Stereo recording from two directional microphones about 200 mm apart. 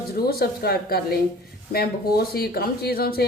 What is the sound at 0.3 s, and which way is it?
Speech, 50° left (ahead or behind).